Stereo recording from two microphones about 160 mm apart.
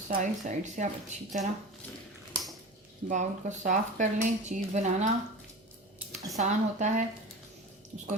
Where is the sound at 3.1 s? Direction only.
50° right (ahead or behind).